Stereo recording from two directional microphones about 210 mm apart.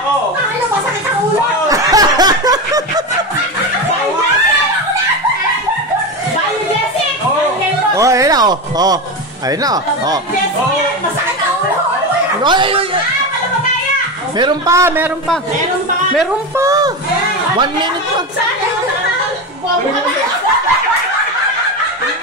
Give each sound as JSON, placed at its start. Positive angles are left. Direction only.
{"t": 1.7, "sound": "snicker", "side_deg": -15}
{"t": 7.9, "sound": "a sound", "side_deg": -15}
{"t": 9.6, "sound": "a man's voice", "side_deg": -15}
{"t": 12.4, "sound": "speech", "side_deg": -25}
{"t": 14.4, "sound": "a man's voice", "side_deg": -15}
{"t": 16.5, "sound": "a sound", "side_deg": -15}